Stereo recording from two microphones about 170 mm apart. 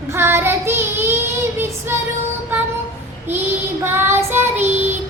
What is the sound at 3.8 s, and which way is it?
Child singing, 15° right (ahead or behind).